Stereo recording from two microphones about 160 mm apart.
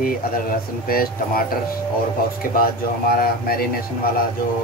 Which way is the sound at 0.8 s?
65° left (ahead or behind).